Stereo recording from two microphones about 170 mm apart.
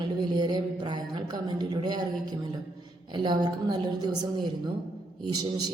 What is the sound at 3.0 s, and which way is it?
A woman's voice, 25° right (ahead or behind).